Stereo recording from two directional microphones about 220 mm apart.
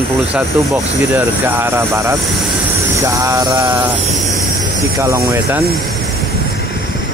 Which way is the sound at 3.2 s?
15° right (ahead or behind).